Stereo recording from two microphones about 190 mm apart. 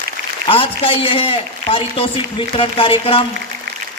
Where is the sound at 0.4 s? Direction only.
30° left (ahead or behind).